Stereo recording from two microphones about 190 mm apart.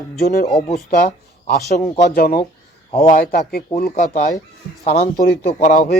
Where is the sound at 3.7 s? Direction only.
40° left (ahead or behind).